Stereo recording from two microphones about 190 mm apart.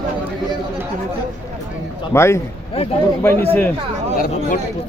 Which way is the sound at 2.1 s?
15° left (ahead or behind).